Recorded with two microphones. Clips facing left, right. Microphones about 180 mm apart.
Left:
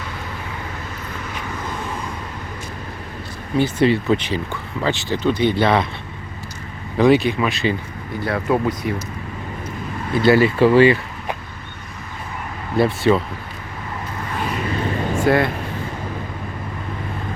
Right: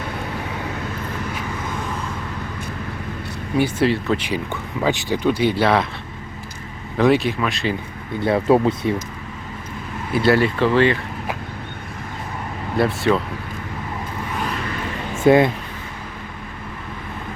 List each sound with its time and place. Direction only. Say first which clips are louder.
3.6 s speech: left 2 dB; 5° right (ahead or behind)
4.8 s speech: right 1 dB; 15° right (ahead or behind)
6.9 s speech: left 2 dB; centre (ahead or behind)
8.2 s speech: right 4 dB; 25° right (ahead or behind)
10.1 s speech: left 2 dB; centre (ahead or behind)
12.7 s speech: left 2 dB; centre (ahead or behind)
15.3 s speech: right 4 dB; 20° right (ahead or behind)